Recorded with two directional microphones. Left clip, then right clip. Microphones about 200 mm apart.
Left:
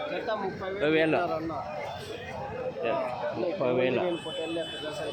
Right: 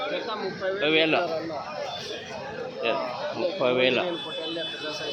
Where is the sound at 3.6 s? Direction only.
Centre (ahead or behind).